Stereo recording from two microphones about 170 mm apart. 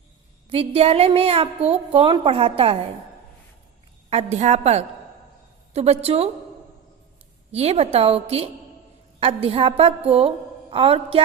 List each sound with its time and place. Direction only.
0.5 s a woman's voice: 30° right (ahead or behind)
4.1 s a woman's voice: 40° right (ahead or behind)
7.5 s a woman's voice: 35° right (ahead or behind)